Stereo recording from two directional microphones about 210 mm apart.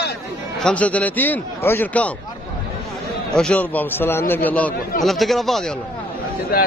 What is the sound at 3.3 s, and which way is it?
A man's voice, 5° left (ahead or behind).